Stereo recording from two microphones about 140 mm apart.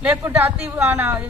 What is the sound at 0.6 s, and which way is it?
Speech, 10° right (ahead or behind).